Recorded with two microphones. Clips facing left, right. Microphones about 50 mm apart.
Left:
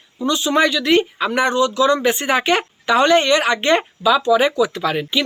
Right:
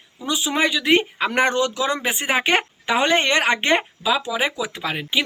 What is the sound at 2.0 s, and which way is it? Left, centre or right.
Speech, centre.